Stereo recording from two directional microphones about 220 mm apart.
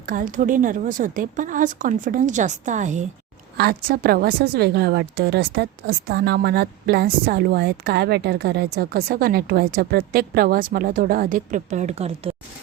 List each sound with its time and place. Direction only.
0.0 s a woman's voice: 40° right (ahead or behind)
3.6 s a woman's voice: 45° right (ahead or behind); by 12.3 s 30° right (ahead or behind)